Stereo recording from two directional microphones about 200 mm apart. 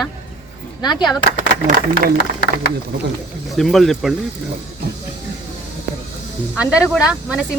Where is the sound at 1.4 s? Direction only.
40° right (ahead or behind).